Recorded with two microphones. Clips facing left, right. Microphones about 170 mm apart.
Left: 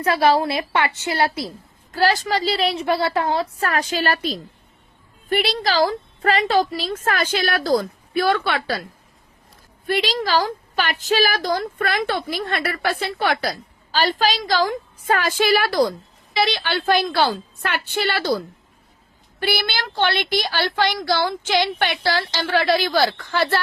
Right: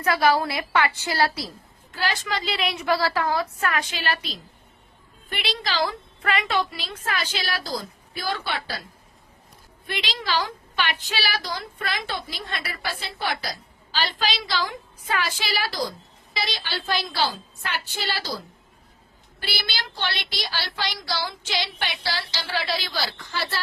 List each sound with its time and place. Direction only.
0.0 s a woman's voice: 30° left (ahead or behind)
1.9 s a woman's voice: 40° left (ahead or behind); by 8.8 s 65° left (ahead or behind)
9.8 s a woman's voice: 45° left (ahead or behind)